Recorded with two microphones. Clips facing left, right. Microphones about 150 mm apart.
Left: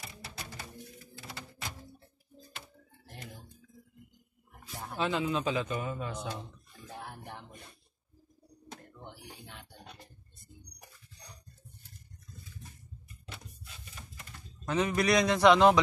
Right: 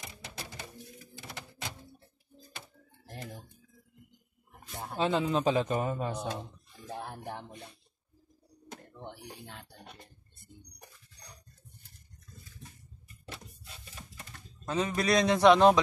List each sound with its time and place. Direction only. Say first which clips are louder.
4.7 s a man's voice: right 3 dB; 25° right (ahead or behind)
6.9 s music: right 5 dB; 30° right (ahead or behind)
9.3 s a sound: right 3 dB; centre (ahead or behind)
14.7 s a man's voice: left 1 dB; 25° right (ahead or behind)